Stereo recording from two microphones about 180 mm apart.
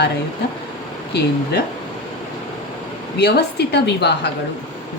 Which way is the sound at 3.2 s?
65° left (ahead or behind).